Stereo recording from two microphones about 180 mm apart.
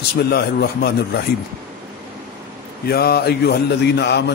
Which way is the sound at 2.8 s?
60° left (ahead or behind).